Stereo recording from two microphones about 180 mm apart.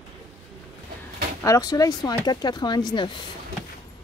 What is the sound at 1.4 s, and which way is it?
Speech, 20° left (ahead or behind).